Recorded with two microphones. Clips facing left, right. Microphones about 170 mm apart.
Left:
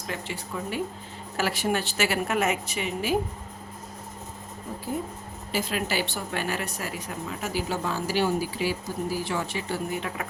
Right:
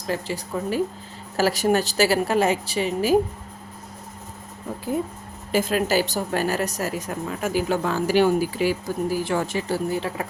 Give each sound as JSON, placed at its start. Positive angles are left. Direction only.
{"t": 0.1, "sound": "a woman's voice", "side_deg": -40}
{"t": 5.5, "sound": "a woman's voice", "side_deg": -50}
{"t": 7.4, "sound": "speech", "side_deg": -55}